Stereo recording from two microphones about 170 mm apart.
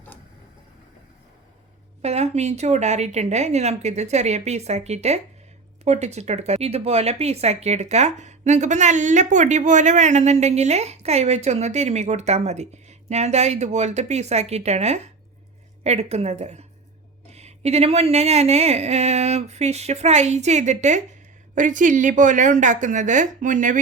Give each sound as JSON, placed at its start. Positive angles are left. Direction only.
{"t": 2.0, "sound": "speech", "side_deg": -40}